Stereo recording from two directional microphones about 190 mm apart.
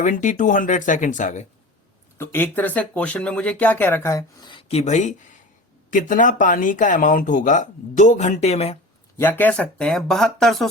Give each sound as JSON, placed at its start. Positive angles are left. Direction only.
{"t": 0.0, "sound": "speech", "side_deg": 40}
{"t": 2.1, "sound": "speech", "side_deg": 10}
{"t": 9.1, "sound": "speech", "side_deg": 10}